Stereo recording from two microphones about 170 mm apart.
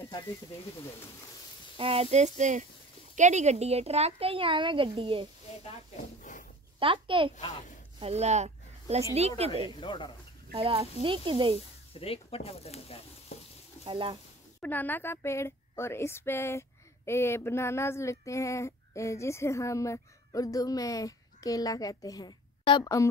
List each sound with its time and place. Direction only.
1.8 s speech: 35° right (ahead or behind)
6.3 s a sound: 50° left (ahead or behind)
6.8 s speech: 30° right (ahead or behind)
9.8 s speech: 30° left (ahead or behind)
10.5 s speech: 35° right (ahead or behind)
11.9 s speech: 35° left (ahead or behind)
13.8 s speech: 30° right (ahead or behind)
14.6 s speech: 10° left (ahead or behind)